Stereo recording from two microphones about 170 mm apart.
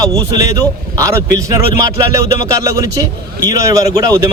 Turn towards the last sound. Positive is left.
turn(degrees=-20)  # may be behind; listen again after turning